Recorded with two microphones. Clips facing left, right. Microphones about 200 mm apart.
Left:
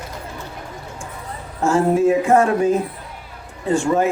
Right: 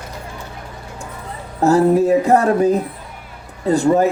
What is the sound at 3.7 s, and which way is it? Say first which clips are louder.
Speech: right 3 dB; 35° right (ahead or behind).